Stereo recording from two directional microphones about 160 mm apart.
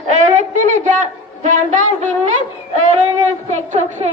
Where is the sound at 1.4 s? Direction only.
50° right (ahead or behind).